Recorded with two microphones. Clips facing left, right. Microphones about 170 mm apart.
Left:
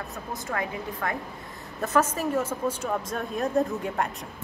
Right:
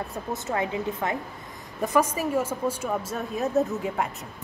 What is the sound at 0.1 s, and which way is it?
Speech, 25° right (ahead or behind).